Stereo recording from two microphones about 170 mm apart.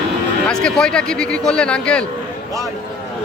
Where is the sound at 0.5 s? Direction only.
5° left (ahead or behind).